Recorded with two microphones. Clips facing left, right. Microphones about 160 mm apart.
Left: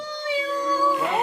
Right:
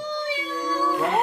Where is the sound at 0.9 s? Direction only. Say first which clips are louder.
Right 1 dB; centre (ahead or behind).